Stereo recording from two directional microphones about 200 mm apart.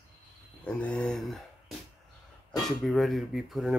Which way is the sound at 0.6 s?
5° left (ahead or behind).